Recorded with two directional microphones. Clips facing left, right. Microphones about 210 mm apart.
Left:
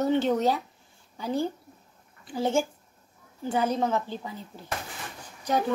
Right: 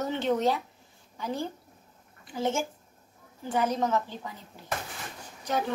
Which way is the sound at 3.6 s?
30° left (ahead or behind).